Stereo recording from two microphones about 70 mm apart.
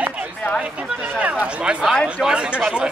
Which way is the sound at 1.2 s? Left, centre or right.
Centre.